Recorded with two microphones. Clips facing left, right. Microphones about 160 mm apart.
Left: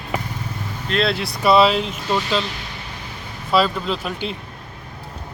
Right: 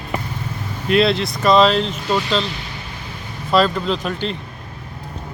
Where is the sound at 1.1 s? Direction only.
10° left (ahead or behind).